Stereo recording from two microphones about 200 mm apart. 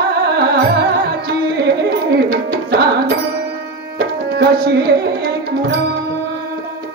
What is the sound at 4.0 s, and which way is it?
Tabla, 50° right (ahead or behind).